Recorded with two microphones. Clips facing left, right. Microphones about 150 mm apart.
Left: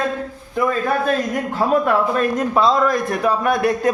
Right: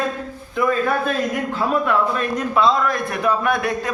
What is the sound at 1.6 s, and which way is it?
A man's voice, 40° left (ahead or behind).